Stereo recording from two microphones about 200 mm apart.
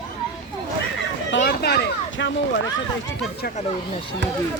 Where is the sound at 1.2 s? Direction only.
65° left (ahead or behind).